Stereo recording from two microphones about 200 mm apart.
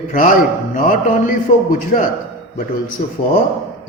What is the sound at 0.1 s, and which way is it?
A man's voice, 45° left (ahead or behind).